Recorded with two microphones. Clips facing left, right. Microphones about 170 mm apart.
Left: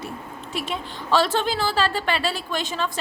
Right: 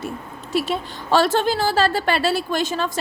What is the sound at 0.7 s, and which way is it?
A woman's voice, 45° right (ahead or behind).